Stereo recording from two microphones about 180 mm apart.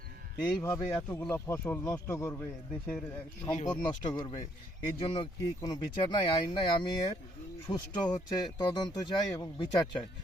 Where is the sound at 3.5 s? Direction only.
40° left (ahead or behind).